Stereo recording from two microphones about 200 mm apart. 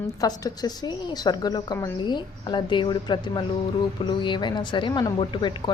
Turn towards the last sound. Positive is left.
turn(degrees=25)  # may be behind; listen again after turning